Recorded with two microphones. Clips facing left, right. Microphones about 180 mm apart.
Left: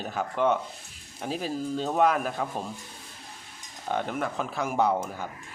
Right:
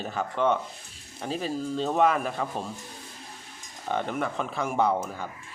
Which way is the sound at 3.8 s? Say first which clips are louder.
Right 1 dB; centre (ahead or behind).